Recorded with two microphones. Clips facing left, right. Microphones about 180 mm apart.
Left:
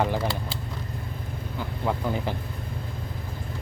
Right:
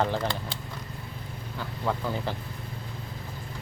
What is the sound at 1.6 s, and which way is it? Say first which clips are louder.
Speech: left 2 dB; 15° left (ahead or behind).